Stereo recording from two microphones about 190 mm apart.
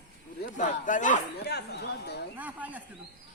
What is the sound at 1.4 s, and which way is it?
Speech, 60° left (ahead or behind).